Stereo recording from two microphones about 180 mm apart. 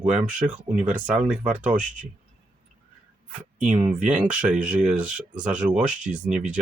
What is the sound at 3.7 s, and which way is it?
Speech, 5° right (ahead or behind).